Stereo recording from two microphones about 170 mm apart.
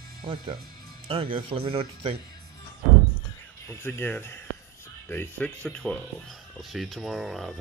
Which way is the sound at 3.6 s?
15° left (ahead or behind).